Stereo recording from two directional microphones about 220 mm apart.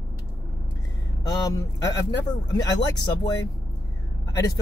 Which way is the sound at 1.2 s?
15° left (ahead or behind).